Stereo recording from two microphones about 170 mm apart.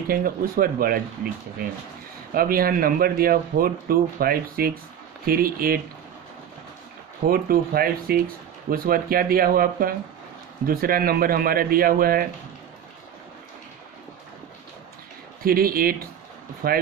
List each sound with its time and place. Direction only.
0.1 s speech: 55° right (ahead or behind)
7.2 s speech: 60° right (ahead or behind)
15.4 s speech: 60° right (ahead or behind)